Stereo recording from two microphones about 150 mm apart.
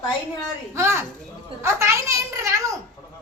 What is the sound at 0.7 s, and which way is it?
A child's voice, 20° right (ahead or behind).